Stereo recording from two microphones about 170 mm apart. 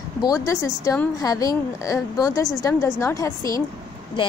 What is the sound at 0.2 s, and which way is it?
A woman's voice, 20° left (ahead or behind).